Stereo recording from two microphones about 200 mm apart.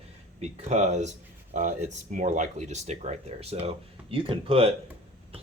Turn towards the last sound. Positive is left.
turn(degrees=-30)  # may be behind; listen again after turning